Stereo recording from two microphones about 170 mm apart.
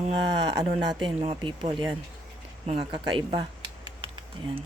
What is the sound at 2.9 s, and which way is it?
Typing, 30° right (ahead or behind).